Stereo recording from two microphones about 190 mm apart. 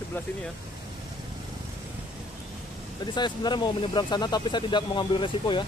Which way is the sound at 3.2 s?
25° left (ahead or behind).